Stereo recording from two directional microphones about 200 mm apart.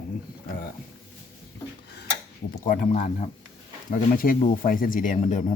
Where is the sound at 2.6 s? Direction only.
40° left (ahead or behind).